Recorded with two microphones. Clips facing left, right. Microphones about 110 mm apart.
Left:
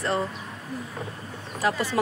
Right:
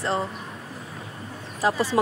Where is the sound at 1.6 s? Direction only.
30° right (ahead or behind).